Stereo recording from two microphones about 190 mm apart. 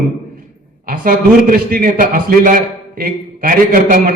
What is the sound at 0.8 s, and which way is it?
A man's voice, 45° right (ahead or behind).